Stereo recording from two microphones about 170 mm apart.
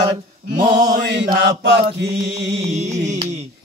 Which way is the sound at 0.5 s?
25° right (ahead or behind).